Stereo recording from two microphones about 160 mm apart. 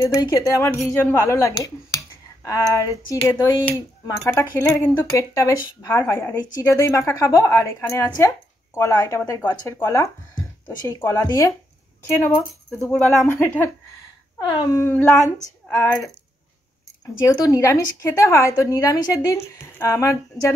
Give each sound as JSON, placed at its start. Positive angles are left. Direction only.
{"t": 0.1, "sound": "speech", "side_deg": 20}
{"t": 12.9, "sound": "speech", "side_deg": 5}
{"t": 14.4, "sound": "speech", "side_deg": 25}